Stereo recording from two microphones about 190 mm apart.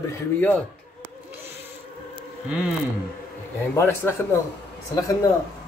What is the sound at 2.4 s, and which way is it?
Speech, 5° right (ahead or behind).